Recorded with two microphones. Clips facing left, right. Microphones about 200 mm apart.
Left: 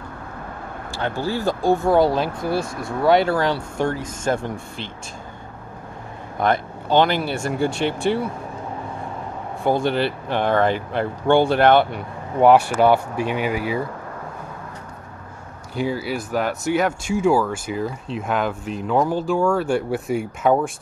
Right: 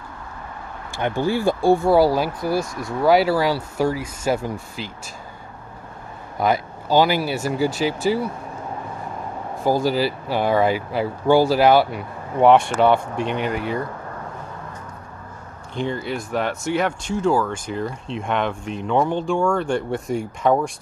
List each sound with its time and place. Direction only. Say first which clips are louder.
0.9 s speech: right 3 dB; 15° right (ahead or behind)
2.6 s speech: left 1 dB; 55° left (ahead or behind)
3.0 s speech: right 1 dB; 5° right (ahead or behind)
6.4 s speech: even; 5° right (ahead or behind)
9.6 s speech: even; centre (ahead or behind)
15.7 s speech: left 1 dB; 5° left (ahead or behind)